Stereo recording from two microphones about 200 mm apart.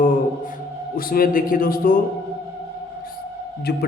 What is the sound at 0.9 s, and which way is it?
A man's voice, 45° left (ahead or behind).